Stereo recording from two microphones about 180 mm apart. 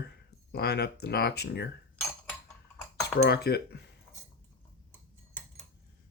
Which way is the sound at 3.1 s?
60° left (ahead or behind).